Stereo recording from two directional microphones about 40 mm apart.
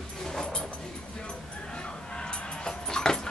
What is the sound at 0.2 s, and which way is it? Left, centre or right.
Dog, centre.